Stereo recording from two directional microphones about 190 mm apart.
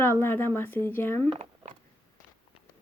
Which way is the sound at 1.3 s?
35° right (ahead or behind).